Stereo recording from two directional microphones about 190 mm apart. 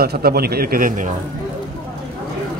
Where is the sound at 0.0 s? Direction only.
55° right (ahead or behind).